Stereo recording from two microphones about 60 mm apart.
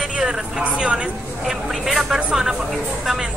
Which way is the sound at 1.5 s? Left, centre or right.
Centre.